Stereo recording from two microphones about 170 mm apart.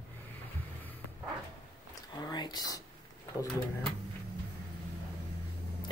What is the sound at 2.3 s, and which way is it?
Speech, 25° left (ahead or behind).